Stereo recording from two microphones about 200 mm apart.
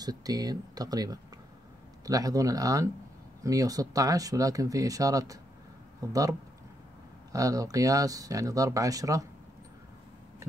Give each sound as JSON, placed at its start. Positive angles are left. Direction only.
{"t": 0.0, "sound": "speech", "side_deg": -20}
{"t": 7.3, "sound": "speech", "side_deg": -15}